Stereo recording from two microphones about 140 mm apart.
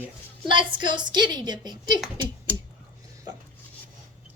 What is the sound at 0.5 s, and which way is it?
A child's voice, 35° right (ahead or behind).